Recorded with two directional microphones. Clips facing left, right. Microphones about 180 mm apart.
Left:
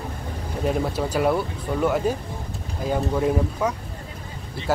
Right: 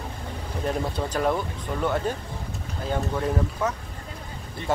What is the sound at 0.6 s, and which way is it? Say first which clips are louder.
Speech: left 4 dB; 10° left (ahead or behind).